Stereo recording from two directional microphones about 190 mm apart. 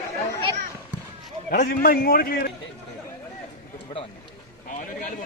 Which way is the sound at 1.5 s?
50° left (ahead or behind).